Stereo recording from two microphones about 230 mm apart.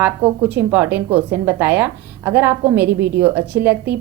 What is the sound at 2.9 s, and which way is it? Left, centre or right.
Speech, right.